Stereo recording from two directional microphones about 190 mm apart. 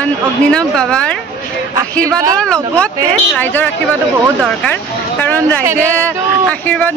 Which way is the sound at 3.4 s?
10° left (ahead or behind).